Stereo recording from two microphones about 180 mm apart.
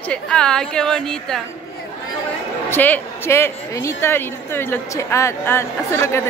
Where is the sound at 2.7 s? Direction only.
10° left (ahead or behind).